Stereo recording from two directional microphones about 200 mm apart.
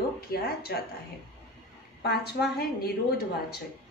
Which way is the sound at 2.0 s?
55° left (ahead or behind).